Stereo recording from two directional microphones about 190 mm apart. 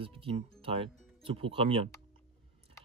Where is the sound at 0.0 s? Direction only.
30° right (ahead or behind).